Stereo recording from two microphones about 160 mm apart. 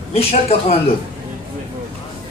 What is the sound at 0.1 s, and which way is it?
Speech, 40° left (ahead or behind).